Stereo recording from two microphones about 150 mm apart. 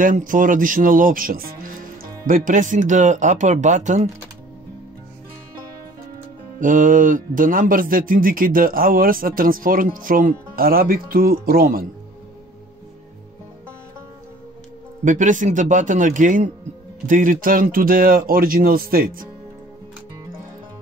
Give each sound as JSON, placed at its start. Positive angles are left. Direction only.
{"t": 0.0, "sound": "speech", "side_deg": -60}
{"t": 6.6, "sound": "speech", "side_deg": -60}
{"t": 15.0, "sound": "speech", "side_deg": -60}